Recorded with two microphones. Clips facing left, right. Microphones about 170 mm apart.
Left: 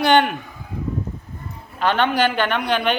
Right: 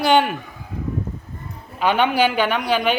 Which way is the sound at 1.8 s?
10° right (ahead or behind).